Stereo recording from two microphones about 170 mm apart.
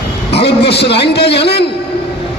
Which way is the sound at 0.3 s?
35° left (ahead or behind).